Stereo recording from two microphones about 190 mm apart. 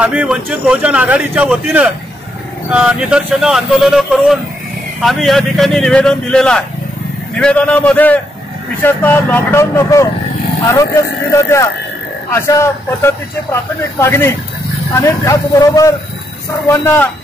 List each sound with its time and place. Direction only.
0.0 s a man's voice: 5° right (ahead or behind); by 17.1 s 15° left (ahead or behind)